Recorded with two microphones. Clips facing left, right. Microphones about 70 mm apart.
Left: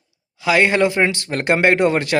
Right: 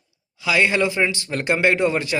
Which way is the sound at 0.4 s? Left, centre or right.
Left.